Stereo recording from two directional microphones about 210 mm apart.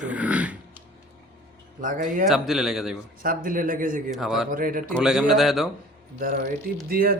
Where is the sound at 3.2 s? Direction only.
40° right (ahead or behind).